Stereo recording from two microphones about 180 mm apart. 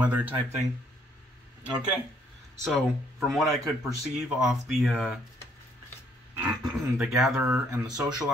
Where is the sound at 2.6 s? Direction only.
Centre (ahead or behind).